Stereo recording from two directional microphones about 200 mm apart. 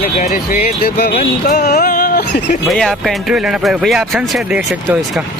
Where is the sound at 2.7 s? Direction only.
Centre (ahead or behind).